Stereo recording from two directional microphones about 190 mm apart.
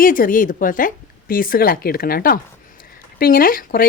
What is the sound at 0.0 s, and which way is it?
A woman's voice, 45° left (ahead or behind).